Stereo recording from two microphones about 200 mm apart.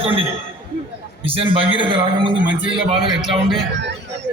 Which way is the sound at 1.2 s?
25° right (ahead or behind).